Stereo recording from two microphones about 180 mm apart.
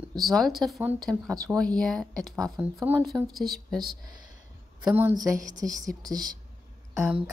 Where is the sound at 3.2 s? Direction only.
Centre (ahead or behind).